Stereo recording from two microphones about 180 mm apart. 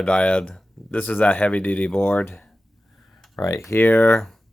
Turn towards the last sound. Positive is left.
turn(degrees=15)  # may be behind; listen again after turning